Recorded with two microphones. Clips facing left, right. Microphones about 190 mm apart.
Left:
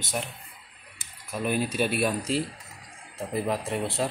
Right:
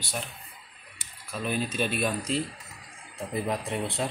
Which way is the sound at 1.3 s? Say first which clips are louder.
Left 3 dB; 10° left (ahead or behind).